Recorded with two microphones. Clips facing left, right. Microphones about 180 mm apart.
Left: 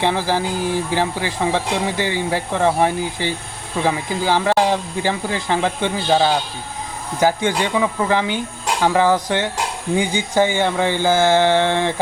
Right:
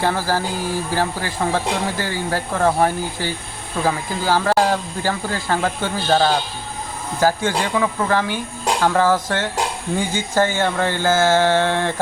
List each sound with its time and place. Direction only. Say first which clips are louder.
0.0 s speech: left 1 dB; 20° left (ahead or behind)